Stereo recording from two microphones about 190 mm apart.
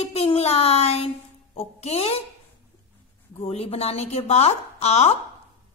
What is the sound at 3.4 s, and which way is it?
A woman's voice, 30° left (ahead or behind).